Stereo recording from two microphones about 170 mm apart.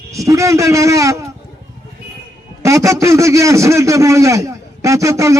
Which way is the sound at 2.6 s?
20° right (ahead or behind).